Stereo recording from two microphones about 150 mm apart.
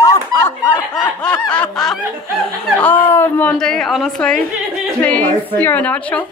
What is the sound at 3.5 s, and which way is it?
A woman's voice, 5° left (ahead or behind).